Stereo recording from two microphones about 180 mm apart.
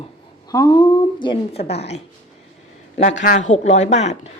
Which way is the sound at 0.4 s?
20° left (ahead or behind).